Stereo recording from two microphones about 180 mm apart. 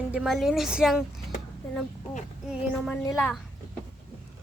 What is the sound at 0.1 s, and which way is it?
Speech, 5° right (ahead or behind).